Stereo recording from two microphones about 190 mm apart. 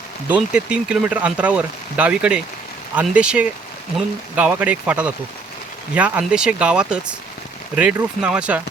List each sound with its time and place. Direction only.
0.3 s speech: 5° right (ahead or behind)